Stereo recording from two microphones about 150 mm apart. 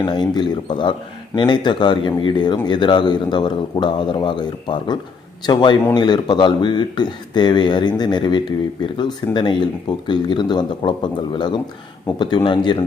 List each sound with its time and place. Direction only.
0.0 s a man's voice: 30° left (ahead or behind)